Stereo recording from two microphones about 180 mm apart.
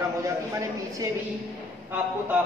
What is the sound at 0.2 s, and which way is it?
Speech, 15° right (ahead or behind).